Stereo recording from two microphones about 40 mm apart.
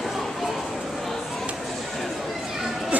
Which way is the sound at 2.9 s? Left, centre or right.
Right.